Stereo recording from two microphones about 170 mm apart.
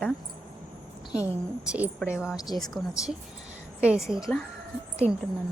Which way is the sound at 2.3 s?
20° left (ahead or behind).